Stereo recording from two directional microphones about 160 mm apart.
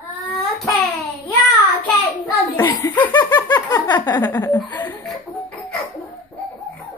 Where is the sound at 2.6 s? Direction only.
20° left (ahead or behind).